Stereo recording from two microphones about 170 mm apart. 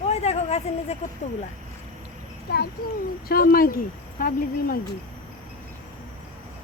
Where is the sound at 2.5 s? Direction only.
65° left (ahead or behind).